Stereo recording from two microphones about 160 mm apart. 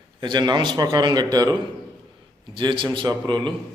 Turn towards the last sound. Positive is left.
turn(degrees=-30)  # may be behind; listen again after turning